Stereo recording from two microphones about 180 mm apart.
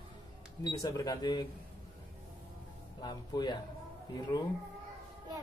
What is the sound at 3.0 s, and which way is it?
Speech, 25° left (ahead or behind).